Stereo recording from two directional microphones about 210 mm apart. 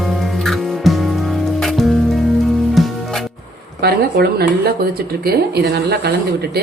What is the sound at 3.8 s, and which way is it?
A woman's voice, 50° right (ahead or behind).